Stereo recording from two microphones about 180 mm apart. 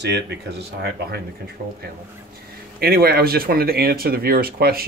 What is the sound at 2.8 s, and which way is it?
Speech, 60° right (ahead or behind).